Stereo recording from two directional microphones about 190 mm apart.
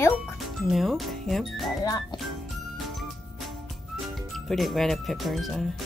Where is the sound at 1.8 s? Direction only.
20° left (ahead or behind).